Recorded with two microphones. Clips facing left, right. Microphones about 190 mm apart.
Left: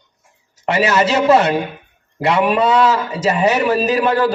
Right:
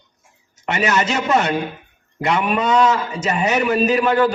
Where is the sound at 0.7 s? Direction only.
35° left (ahead or behind).